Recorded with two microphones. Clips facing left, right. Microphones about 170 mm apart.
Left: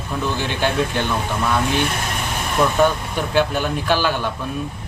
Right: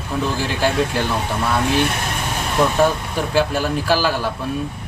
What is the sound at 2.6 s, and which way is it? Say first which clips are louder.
Speech: even; 5° right (ahead or behind).